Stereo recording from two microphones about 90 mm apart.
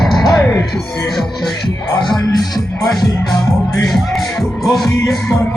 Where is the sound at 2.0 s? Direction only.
60° left (ahead or behind).